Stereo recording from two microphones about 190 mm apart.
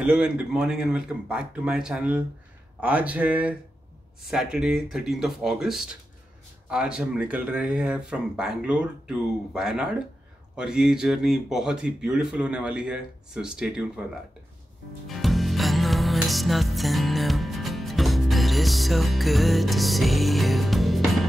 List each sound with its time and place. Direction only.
0.0 s speech: 5° right (ahead or behind)
15.0 s music: centre (ahead or behind)